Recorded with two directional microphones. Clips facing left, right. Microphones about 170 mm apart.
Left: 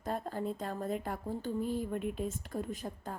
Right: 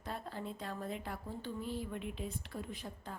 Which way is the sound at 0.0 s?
45° left (ahead or behind).